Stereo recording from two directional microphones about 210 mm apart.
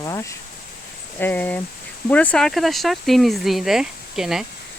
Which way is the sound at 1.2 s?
10° left (ahead or behind).